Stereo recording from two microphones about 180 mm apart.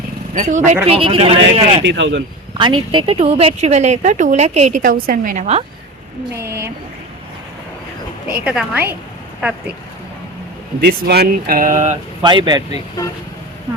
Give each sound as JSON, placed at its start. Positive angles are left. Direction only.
{"t": 0.3, "sound": "speech", "side_deg": -45}
{"t": 0.9, "sound": "speech", "side_deg": -30}
{"t": 1.9, "sound": "speech", "side_deg": -70}
{"t": 2.6, "sound": "speech", "side_deg": -25}
{"t": 6.3, "sound": "a woman's voice", "side_deg": -15}
{"t": 8.4, "sound": "a woman's voice", "side_deg": -5}
{"t": 10.8, "sound": "speech", "side_deg": -60}
{"t": 12.2, "sound": "speech", "side_deg": -25}